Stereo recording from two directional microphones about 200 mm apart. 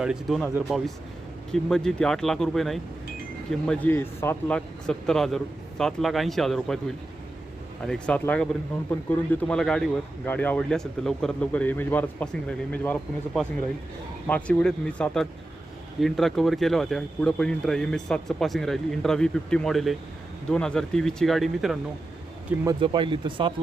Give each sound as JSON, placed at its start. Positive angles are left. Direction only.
{"t": 0.0, "sound": "speech", "side_deg": 0}
{"t": 1.5, "sound": "a man's voice", "side_deg": 0}
{"t": 22.6, "sound": "speech", "side_deg": -25}